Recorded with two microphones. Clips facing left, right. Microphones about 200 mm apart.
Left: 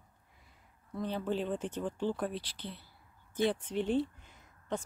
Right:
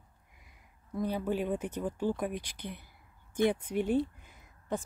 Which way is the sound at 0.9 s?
10° right (ahead or behind).